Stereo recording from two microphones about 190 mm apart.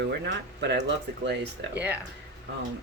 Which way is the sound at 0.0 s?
65° right (ahead or behind).